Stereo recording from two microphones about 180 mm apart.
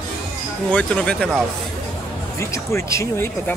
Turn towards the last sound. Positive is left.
turn(degrees=10)  # may be behind; listen again after turning